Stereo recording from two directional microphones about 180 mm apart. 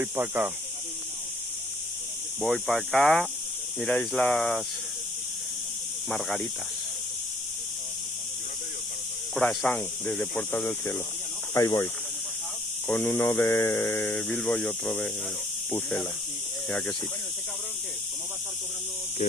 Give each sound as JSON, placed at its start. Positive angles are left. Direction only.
{"t": 0.0, "sound": "speech", "side_deg": -10}
{"t": 2.4, "sound": "speech", "side_deg": -5}
{"t": 6.0, "sound": "speech", "side_deg": 0}
{"t": 9.3, "sound": "speech", "side_deg": 5}
{"t": 12.8, "sound": "speech", "side_deg": 5}